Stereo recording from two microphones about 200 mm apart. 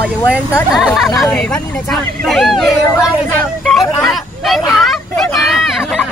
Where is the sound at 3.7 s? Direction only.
Centre (ahead or behind).